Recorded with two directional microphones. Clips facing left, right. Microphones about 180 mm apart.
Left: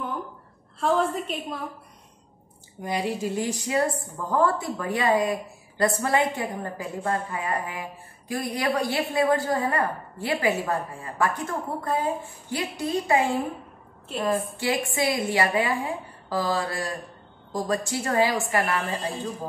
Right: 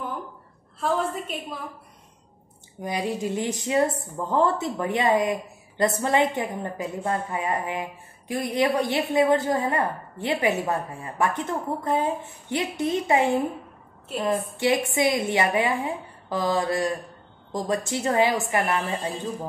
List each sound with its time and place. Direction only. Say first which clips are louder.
0.7 s a woman's voice: left 2 dB; centre (ahead or behind)
2.8 s a woman's voice: even; 20° right (ahead or behind)